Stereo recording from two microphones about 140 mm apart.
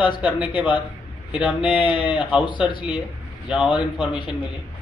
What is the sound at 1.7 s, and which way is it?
Speech, 35° left (ahead or behind).